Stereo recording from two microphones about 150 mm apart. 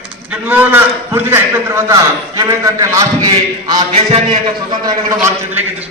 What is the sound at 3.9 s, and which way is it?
A man's voice, 40° right (ahead or behind).